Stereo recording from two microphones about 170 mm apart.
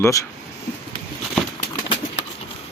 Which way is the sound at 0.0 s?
20° left (ahead or behind).